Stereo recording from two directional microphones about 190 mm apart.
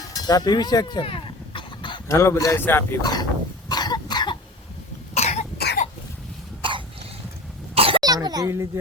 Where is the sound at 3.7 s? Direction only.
20° left (ahead or behind).